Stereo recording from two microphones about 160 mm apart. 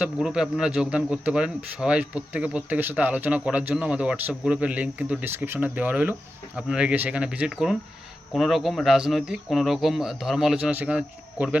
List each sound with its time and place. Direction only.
0.0 s speech: 5° right (ahead or behind)